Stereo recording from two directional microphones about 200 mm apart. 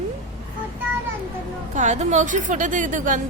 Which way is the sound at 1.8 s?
35° right (ahead or behind).